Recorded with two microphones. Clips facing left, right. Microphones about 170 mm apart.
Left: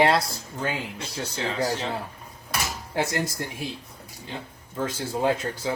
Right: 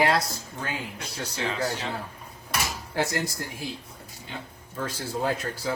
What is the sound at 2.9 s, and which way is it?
Speech, 20° left (ahead or behind).